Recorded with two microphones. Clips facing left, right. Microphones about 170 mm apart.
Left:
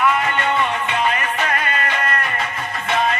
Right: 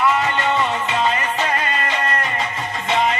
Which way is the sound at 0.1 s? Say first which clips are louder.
Right 1 dB; 20° right (ahead or behind).